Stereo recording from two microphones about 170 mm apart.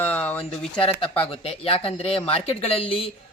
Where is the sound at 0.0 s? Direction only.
10° left (ahead or behind).